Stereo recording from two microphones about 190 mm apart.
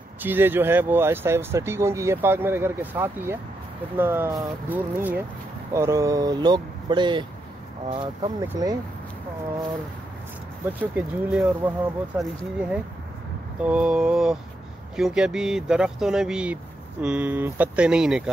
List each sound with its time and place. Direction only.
0.2 s speech: 10° right (ahead or behind)
10.7 s speech: 10° right (ahead or behind)
13.7 s speech: 5° right (ahead or behind)